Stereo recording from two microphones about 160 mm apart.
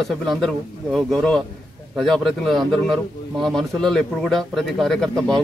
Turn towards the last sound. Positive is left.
turn(degrees=5)  # may be behind; listen again after turning